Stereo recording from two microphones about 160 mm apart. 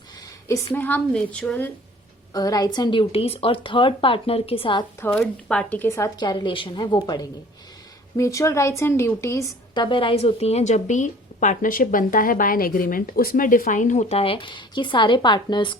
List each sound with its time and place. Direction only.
0.4 s a woman's voice: 20° left (ahead or behind)
2.3 s a woman's voice: 25° left (ahead or behind)
4.9 s a woman's voice: 15° left (ahead or behind)
9.7 s a woman's voice: 30° left (ahead or behind)